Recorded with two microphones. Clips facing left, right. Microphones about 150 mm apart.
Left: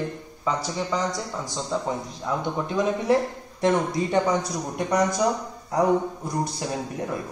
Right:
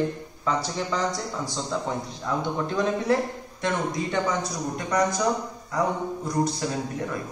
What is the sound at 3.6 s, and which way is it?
Speech, 30° left (ahead or behind).